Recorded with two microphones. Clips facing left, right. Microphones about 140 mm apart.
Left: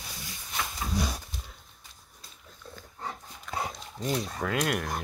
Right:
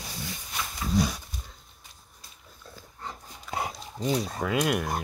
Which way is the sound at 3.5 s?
5° right (ahead or behind).